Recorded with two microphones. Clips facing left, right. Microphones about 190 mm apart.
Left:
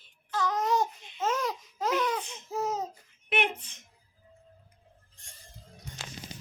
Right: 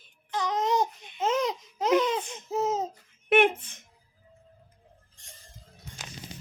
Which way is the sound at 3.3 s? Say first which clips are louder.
Right 9 dB; 50° right (ahead or behind).